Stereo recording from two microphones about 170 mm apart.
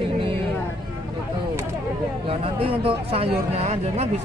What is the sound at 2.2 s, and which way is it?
Speech, 35° right (ahead or behind).